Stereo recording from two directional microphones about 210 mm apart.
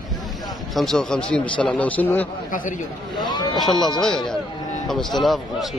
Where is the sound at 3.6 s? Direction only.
Centre (ahead or behind).